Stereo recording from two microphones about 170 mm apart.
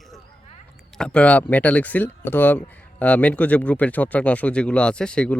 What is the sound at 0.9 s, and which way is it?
Speech, 5° left (ahead or behind).